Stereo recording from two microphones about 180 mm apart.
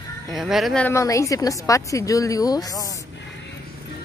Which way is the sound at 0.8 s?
15° left (ahead or behind).